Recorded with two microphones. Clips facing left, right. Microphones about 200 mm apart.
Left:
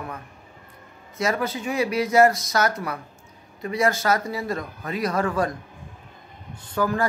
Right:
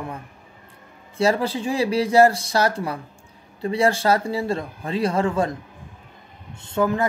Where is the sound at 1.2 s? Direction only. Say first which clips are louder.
Right 4 dB; 30° right (ahead or behind).